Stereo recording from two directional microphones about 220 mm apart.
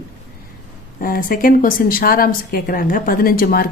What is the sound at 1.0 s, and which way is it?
A woman's voice, 40° left (ahead or behind).